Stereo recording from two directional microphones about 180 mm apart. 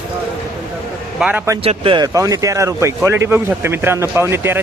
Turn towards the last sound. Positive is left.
turn(degrees=-15)  # may be behind; listen again after turning